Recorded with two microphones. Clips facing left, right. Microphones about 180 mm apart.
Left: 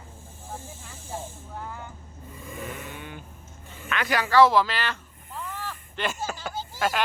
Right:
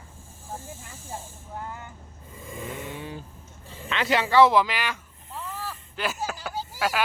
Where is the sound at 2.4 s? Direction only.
25° right (ahead or behind).